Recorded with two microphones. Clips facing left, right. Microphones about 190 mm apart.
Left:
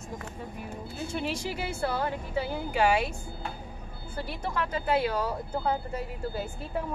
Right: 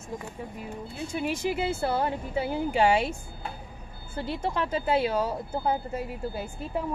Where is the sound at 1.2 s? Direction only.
20° right (ahead or behind).